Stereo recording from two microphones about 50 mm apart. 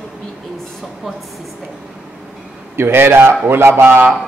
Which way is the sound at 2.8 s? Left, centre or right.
Right.